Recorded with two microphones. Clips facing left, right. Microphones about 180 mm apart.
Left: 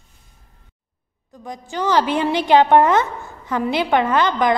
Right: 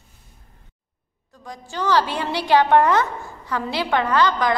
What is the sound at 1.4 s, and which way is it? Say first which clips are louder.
A woman's voice: left 2 dB; 20° left (ahead or behind).